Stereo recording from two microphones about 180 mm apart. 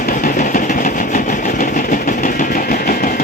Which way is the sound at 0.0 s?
50° left (ahead or behind).